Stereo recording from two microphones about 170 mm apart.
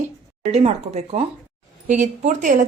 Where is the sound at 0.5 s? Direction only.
40° right (ahead or behind).